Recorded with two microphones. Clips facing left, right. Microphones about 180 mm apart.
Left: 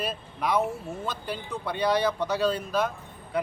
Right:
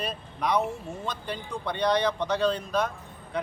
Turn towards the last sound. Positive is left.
turn(degrees=5)  # may be behind; listen again after turning